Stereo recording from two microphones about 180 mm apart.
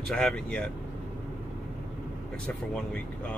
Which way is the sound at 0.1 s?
5° left (ahead or behind).